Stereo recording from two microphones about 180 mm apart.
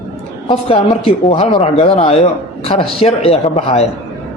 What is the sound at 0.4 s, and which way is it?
A man's voice, 30° left (ahead or behind).